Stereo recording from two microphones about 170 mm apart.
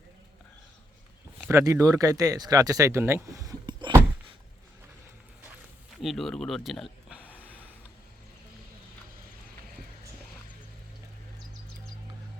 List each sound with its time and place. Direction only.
1.4 s speech: 15° right (ahead or behind)
6.0 s speech: centre (ahead or behind)